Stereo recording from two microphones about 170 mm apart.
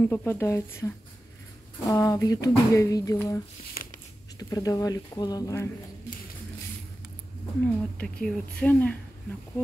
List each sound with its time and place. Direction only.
0.0 s speech: 15° left (ahead or behind)
3.8 s a sound: 60° left (ahead or behind)
4.4 s speech: 20° left (ahead or behind)
7.6 s speech: 5° left (ahead or behind)